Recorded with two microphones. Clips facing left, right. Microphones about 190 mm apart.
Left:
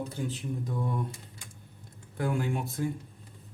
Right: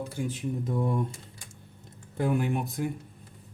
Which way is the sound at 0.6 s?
25° right (ahead or behind).